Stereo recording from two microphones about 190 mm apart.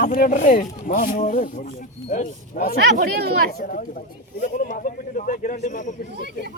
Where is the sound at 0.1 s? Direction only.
40° left (ahead or behind).